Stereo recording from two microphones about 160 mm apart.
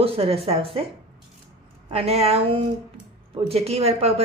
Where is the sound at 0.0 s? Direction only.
35° right (ahead or behind).